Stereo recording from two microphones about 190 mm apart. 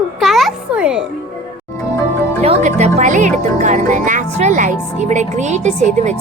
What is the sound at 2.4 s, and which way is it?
Speech, 35° right (ahead or behind).